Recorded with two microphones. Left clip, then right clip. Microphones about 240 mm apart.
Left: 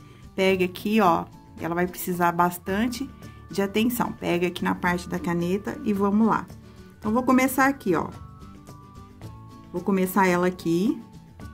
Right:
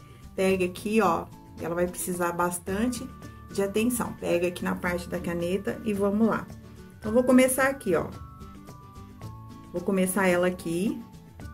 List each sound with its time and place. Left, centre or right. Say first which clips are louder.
0.4 s speech: left 3 dB; left
9.8 s speech: left 3 dB; left